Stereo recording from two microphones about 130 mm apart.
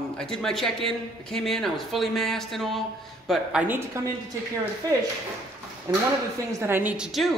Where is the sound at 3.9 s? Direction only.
25° right (ahead or behind).